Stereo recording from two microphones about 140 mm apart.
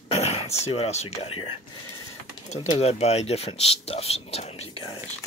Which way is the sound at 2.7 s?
50° left (ahead or behind).